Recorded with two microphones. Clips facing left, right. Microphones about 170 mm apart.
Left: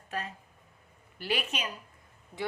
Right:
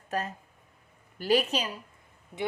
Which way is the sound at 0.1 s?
40° right (ahead or behind).